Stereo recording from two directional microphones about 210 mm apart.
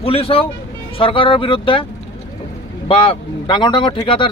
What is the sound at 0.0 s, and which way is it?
Speech, 25° left (ahead or behind).